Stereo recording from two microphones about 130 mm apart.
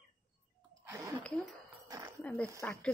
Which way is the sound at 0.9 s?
20° right (ahead or behind).